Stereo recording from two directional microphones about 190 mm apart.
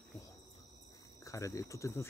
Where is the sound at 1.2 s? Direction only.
15° left (ahead or behind).